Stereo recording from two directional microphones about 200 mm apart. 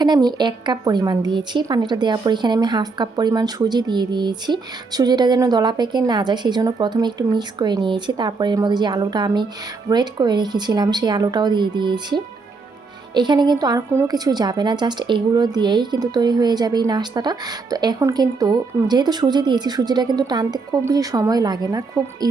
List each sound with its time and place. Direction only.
0.0 s speech: 20° right (ahead or behind)